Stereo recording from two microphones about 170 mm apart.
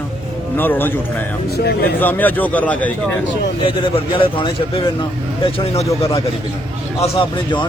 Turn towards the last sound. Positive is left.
turn(degrees=30)  # may be behind; listen again after turning